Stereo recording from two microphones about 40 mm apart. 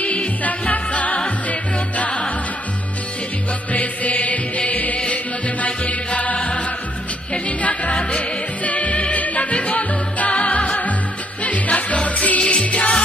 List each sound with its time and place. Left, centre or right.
0.0 s music: left
3.7 s music: left